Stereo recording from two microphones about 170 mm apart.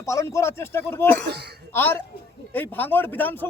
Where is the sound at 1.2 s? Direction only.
70° right (ahead or behind).